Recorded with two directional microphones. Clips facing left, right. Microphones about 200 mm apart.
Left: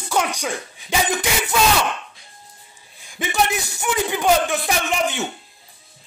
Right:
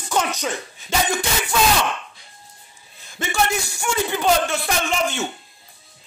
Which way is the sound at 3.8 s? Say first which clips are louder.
Left 1 dB; 15° left (ahead or behind).